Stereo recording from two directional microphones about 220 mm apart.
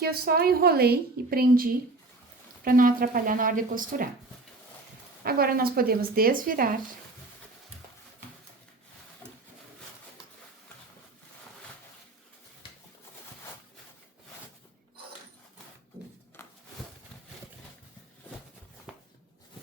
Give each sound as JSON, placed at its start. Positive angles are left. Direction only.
{"t": 0.0, "sound": "a woman's voice", "side_deg": -45}
{"t": 5.2, "sound": "speech", "side_deg": -45}
{"t": 18.9, "sound": "a sound", "side_deg": -5}